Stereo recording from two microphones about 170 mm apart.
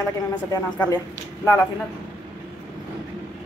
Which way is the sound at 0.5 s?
20° left (ahead or behind).